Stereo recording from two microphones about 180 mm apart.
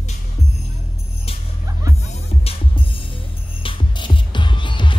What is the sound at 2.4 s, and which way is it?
Music, 30° left (ahead or behind).